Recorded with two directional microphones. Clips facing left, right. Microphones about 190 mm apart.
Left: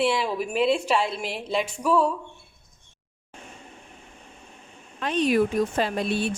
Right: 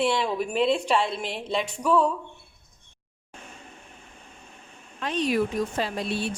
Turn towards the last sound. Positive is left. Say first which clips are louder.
# left 3 dB
turn(degrees=55)  # may be behind; listen again after turning